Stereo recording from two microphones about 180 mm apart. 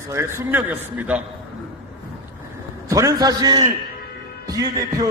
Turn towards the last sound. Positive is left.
turn(degrees=-20)  # may be behind; listen again after turning